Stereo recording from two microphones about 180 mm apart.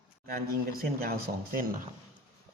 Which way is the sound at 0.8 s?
55° right (ahead or behind).